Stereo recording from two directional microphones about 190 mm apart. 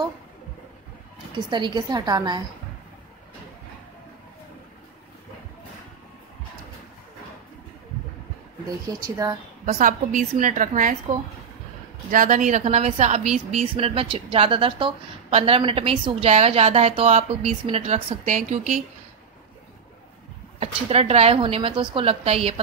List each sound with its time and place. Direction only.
1.3 s a woman's voice: 25° right (ahead or behind)
8.6 s speech: 20° right (ahead or behind)
9.7 s a woman's voice: 40° right (ahead or behind)
12.1 s a woman's voice: 45° right (ahead or behind)
20.5 s a woman's voice: 35° right (ahead or behind)